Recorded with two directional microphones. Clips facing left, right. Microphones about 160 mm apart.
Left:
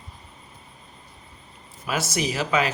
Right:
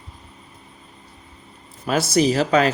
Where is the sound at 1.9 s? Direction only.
35° right (ahead or behind).